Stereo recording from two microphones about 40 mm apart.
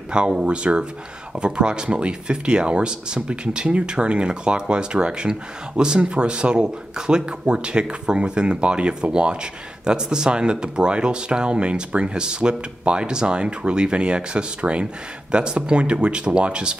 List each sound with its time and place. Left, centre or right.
0.1 s speech: right